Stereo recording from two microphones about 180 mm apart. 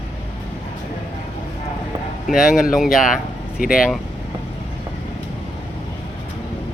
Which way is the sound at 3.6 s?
55° left (ahead or behind).